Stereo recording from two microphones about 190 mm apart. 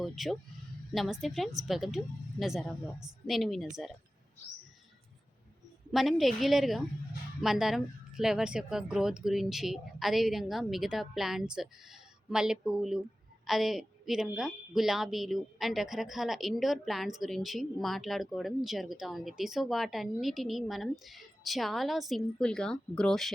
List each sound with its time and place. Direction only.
0.0 s a woman's voice: centre (ahead or behind)
5.9 s a woman's voice: centre (ahead or behind)